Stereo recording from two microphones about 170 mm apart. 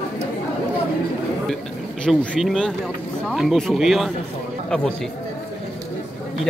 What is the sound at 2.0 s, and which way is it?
Speech, centre (ahead or behind).